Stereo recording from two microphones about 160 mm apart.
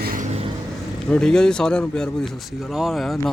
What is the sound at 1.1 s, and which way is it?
Speech, 5° left (ahead or behind).